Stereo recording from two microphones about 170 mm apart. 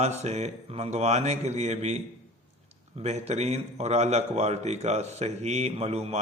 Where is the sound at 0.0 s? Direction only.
40° right (ahead or behind).